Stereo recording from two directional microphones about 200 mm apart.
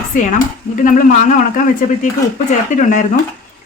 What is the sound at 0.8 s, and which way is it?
Speech, 40° left (ahead or behind).